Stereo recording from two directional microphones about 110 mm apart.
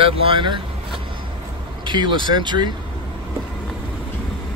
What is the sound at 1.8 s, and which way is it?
Speech, 45° right (ahead or behind).